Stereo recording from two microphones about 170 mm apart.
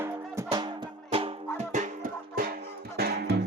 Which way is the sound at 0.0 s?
20° right (ahead or behind).